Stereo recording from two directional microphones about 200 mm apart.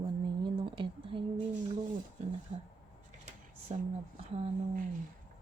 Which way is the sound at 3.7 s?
35° right (ahead or behind).